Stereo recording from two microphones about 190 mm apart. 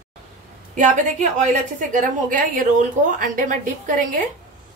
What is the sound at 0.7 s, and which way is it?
A woman's voice, 40° right (ahead or behind).